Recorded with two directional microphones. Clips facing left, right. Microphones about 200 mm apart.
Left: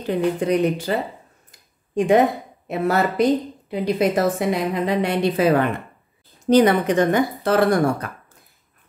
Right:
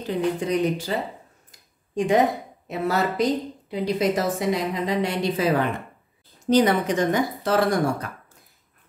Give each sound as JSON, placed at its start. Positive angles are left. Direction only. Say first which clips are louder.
{"t": 0.0, "sound": "a woman's voice", "louder": "left 3 dB", "side_deg": 60}
{"t": 2.0, "sound": "a woman's voice", "louder": "left 4 dB", "side_deg": 60}